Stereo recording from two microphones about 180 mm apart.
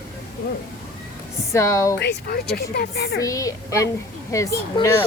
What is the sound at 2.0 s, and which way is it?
Speech, 65° left (ahead or behind).